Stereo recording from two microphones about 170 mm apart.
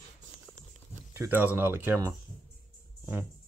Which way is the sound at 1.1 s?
15° right (ahead or behind).